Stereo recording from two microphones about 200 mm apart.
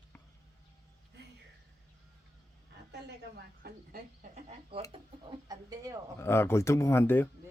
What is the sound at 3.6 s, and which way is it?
Speech, 55° right (ahead or behind).